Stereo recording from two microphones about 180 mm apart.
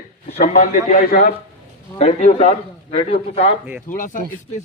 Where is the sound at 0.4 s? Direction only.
50° left (ahead or behind).